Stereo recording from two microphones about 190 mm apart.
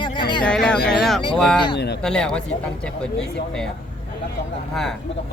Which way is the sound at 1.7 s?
60° left (ahead or behind).